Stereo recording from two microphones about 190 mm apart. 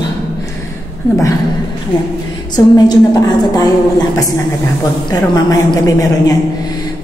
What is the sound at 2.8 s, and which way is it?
A woman's voice, 20° left (ahead or behind).